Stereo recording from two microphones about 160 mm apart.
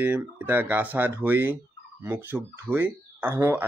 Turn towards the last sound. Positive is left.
turn(degrees=-10)  # may be behind; listen again after turning